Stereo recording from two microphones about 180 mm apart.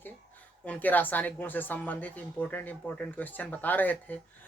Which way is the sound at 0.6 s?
10° left (ahead or behind).